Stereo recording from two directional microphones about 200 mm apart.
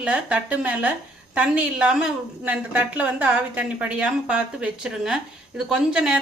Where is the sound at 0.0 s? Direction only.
5° right (ahead or behind).